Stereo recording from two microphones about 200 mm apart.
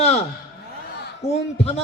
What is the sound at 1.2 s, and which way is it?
Speech, 30° left (ahead or behind).